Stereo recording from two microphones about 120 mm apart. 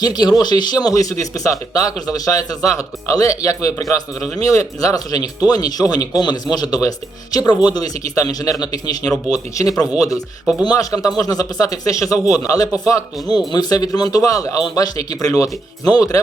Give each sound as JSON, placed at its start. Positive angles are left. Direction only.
{"t": 0.0, "sound": "a man's voice", "side_deg": 35}